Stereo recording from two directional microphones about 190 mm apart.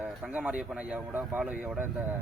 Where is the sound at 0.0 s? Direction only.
5° right (ahead or behind).